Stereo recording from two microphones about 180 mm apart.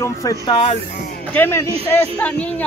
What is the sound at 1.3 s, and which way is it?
Speech, 10° left (ahead or behind).